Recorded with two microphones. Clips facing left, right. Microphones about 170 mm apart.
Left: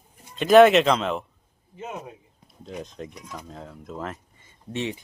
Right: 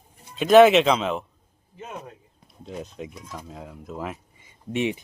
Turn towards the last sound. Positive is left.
turn(degrees=-15)  # may be behind; listen again after turning